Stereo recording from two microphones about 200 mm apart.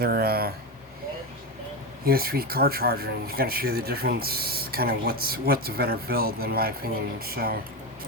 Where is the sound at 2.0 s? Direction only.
50° right (ahead or behind).